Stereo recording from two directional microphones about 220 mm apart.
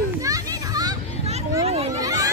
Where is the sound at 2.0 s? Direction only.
15° right (ahead or behind).